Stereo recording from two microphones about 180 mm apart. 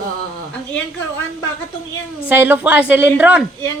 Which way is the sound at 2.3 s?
10° right (ahead or behind).